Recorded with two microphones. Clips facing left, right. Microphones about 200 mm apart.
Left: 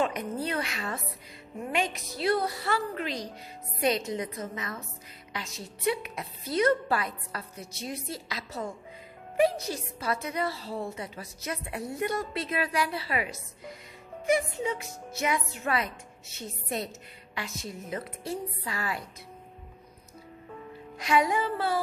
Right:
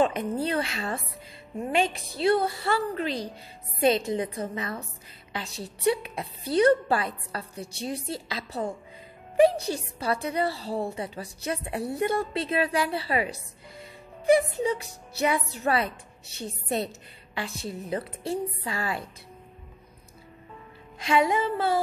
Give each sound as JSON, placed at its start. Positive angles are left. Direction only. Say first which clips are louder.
{"t": 0.0, "sound": "a woman's voice", "louder": "right 4 dB", "side_deg": -30}
{"t": 21.0, "sound": "a woman's voice", "louder": "right 2 dB", "side_deg": -25}